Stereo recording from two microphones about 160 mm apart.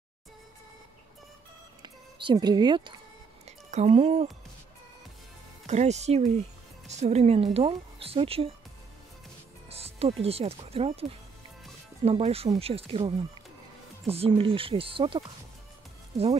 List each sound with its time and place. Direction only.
1.8 s speech: 25° right (ahead or behind)
3.4 s speech: 45° right (ahead or behind)
5.7 s speech: 45° right (ahead or behind)
9.7 s speech: 40° right (ahead or behind)